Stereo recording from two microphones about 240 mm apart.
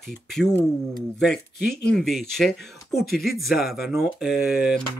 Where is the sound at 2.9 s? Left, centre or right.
Left.